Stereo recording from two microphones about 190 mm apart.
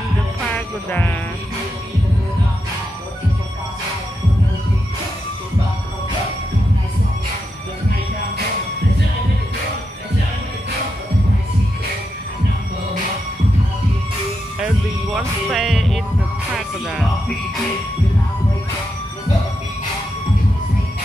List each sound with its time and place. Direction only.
0.6 s music: 10° left (ahead or behind)
15.1 s music: centre (ahead or behind)